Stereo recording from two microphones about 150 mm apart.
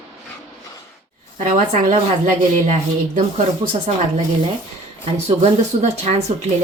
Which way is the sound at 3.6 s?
25° right (ahead or behind).